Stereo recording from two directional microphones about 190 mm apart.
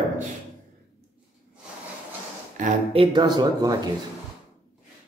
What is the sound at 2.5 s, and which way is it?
Speech, 35° right (ahead or behind).